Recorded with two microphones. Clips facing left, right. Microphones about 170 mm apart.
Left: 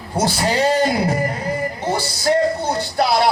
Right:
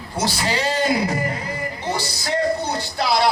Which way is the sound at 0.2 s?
50° left (ahead or behind).